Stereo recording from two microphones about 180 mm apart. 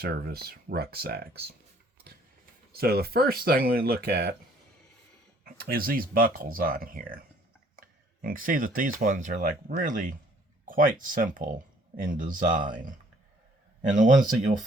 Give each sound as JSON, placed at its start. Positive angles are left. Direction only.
{"t": 0.0, "sound": "speech", "side_deg": -60}
{"t": 2.7, "sound": "speech", "side_deg": -60}
{"t": 5.5, "sound": "speech", "side_deg": -55}